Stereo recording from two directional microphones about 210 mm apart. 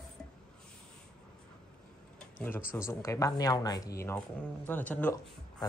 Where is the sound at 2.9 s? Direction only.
15° left (ahead or behind).